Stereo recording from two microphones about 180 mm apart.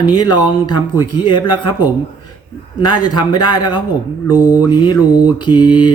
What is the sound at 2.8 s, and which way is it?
Mantra, 25° left (ahead or behind).